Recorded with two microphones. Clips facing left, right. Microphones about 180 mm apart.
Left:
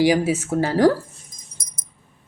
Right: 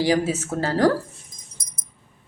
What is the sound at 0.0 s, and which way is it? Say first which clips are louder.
Speech: left 3 dB; 15° left (ahead or behind).